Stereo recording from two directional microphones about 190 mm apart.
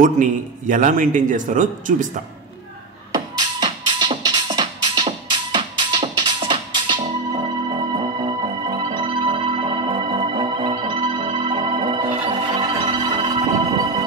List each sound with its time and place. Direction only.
0.0 s a man's voice: 45° right (ahead or behind)
3.1 s music: 20° right (ahead or behind)